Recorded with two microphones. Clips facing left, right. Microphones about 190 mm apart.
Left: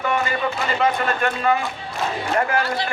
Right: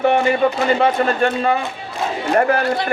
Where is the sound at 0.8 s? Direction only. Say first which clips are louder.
Right 5 dB; 30° right (ahead or behind).